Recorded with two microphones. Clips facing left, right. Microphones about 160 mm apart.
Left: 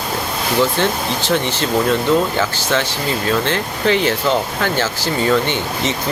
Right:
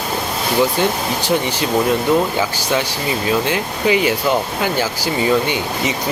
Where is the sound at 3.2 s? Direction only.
10° right (ahead or behind).